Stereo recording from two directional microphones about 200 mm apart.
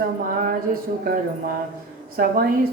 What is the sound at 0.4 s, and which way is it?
A man's voice, 45° right (ahead or behind).